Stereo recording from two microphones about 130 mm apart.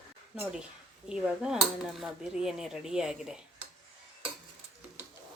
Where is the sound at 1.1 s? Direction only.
5° right (ahead or behind).